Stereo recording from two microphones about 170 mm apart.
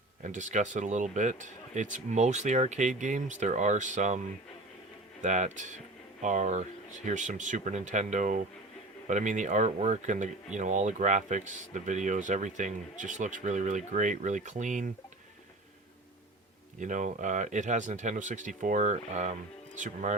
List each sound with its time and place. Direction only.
0.3 s speech: 45° right (ahead or behind)
5.2 s speech: 45° right (ahead or behind)
16.8 s speech: 50° right (ahead or behind)